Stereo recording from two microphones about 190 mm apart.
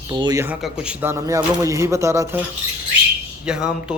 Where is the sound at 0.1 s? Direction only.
20° right (ahead or behind).